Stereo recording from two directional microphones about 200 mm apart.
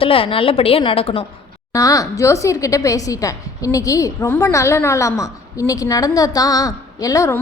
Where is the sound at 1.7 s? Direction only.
15° left (ahead or behind).